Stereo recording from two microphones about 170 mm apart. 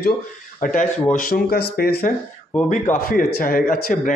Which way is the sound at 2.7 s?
50° left (ahead or behind).